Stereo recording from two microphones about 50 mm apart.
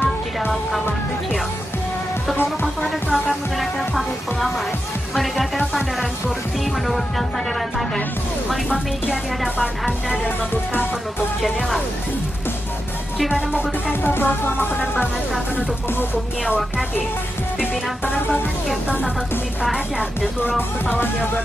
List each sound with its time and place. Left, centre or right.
2.8 s speech: centre
9.4 s speech: centre
10.2 s music: left
14.0 s music: left
20.9 s music: left